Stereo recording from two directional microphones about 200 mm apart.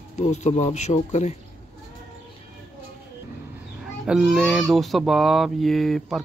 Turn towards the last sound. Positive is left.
turn(degrees=0)  # may be behind; listen again after turning